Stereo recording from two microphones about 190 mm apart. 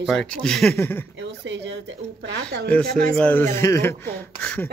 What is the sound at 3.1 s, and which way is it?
Speech, 10° left (ahead or behind).